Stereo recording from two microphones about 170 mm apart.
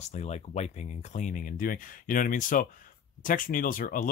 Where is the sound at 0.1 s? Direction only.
40° left (ahead or behind).